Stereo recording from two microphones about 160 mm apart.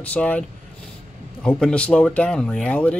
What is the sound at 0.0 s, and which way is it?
Speech, 10° left (ahead or behind).